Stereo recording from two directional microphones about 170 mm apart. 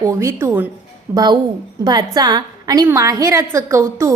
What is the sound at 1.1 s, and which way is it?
A woman's voice, 25° right (ahead or behind).